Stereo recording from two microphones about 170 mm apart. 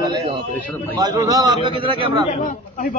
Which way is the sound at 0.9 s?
20° right (ahead or behind).